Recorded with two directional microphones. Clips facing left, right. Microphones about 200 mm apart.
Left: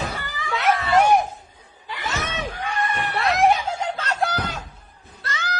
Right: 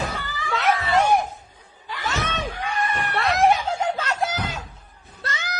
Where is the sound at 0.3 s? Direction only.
20° left (ahead or behind).